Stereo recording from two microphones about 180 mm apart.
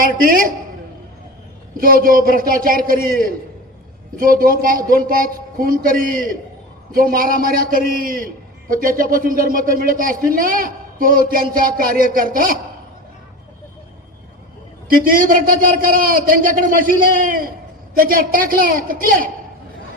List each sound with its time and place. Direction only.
0.0 s a man's voice: 50° right (ahead or behind)
1.8 s a man's voice: 50° right (ahead or behind)
14.8 s a man's voice: 50° right (ahead or behind)